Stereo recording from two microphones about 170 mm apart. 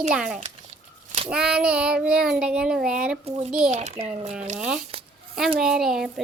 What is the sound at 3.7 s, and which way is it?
Speech, 40° right (ahead or behind).